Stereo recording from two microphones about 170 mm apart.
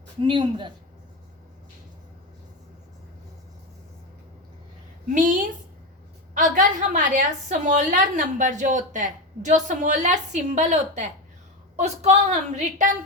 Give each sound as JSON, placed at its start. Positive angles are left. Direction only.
{"t": 0.3, "sound": "speech", "side_deg": -30}
{"t": 5.1, "sound": "a woman's voice", "side_deg": -50}